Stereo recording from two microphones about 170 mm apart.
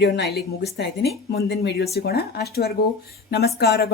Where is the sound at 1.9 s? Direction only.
70° left (ahead or behind).